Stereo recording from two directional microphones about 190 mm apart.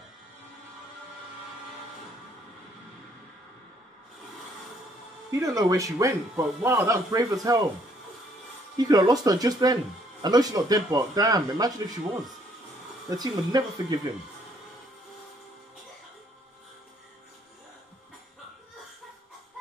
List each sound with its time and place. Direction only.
5.3 s speech: 20° right (ahead or behind)
8.7 s speech: 20° right (ahead or behind)
13.1 s speech: 20° right (ahead or behind)